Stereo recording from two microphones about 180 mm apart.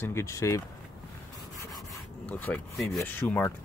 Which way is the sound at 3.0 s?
10° left (ahead or behind).